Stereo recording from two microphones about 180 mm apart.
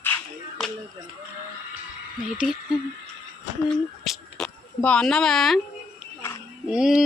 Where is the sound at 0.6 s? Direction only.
Centre (ahead or behind).